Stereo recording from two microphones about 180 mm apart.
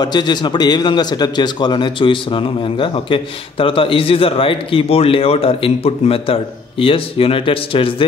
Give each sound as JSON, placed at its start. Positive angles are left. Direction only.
{"t": 0.0, "sound": "a man's voice", "side_deg": 25}